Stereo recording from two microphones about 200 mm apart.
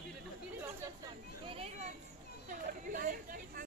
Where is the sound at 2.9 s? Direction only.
45° right (ahead or behind).